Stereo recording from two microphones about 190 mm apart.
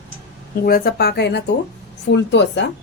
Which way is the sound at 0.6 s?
50° left (ahead or behind).